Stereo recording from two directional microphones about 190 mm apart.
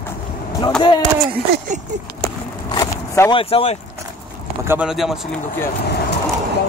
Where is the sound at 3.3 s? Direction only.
30° left (ahead or behind).